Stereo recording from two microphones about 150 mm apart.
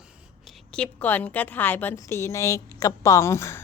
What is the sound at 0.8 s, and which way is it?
A woman's voice, 10° left (ahead or behind).